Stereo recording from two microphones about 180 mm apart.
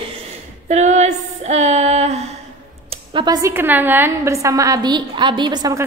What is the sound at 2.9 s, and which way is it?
A woman's voice, 30° right (ahead or behind).